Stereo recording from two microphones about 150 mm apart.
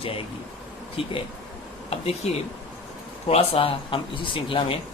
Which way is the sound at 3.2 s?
40° left (ahead or behind).